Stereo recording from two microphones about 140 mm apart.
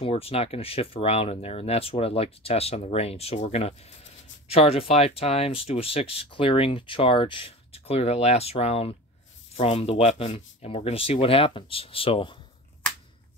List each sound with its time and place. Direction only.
0.0 s speech: 45° left (ahead or behind)